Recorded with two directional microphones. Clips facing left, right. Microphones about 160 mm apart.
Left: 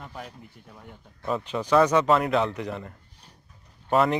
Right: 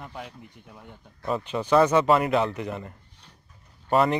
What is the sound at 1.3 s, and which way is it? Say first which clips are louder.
Speech: right 1 dB; centre (ahead or behind).